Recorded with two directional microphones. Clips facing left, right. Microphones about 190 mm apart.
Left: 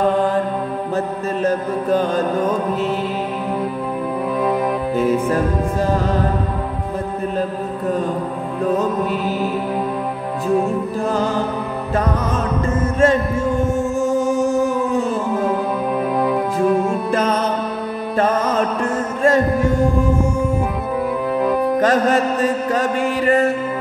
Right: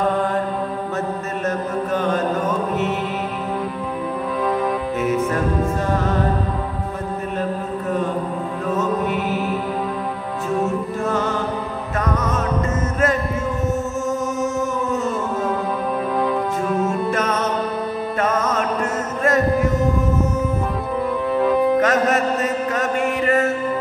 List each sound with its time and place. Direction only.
1.4 s music: 35° left (ahead or behind)
4.9 s music: 30° left (ahead or behind)
8.6 s music: 35° left (ahead or behind)
11.1 s music: 35° left (ahead or behind)
13.0 s chant: 30° left (ahead or behind)
17.1 s music: 30° left (ahead or behind)
21.4 s music: centre (ahead or behind)
21.7 s music: 30° left (ahead or behind)